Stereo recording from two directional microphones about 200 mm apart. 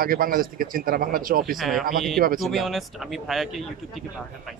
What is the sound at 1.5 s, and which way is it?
Speech, centre (ahead or behind).